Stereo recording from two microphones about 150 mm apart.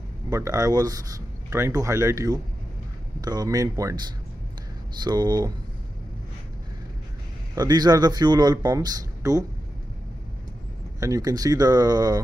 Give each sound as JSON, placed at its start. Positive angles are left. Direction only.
{"t": 0.3, "sound": "speech", "side_deg": -20}
{"t": 7.5, "sound": "speech", "side_deg": -25}
{"t": 11.0, "sound": "speech", "side_deg": -20}